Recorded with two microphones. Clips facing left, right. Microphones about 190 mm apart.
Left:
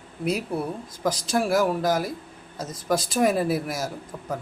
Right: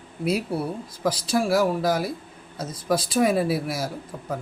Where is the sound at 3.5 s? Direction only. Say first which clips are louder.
Even; 45° left (ahead or behind).